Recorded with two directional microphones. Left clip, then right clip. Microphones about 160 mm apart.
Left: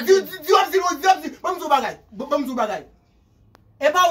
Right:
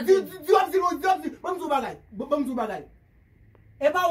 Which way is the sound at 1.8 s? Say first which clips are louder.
Left 5 dB; 15° right (ahead or behind).